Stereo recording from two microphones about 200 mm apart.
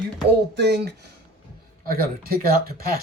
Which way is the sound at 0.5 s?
55° right (ahead or behind).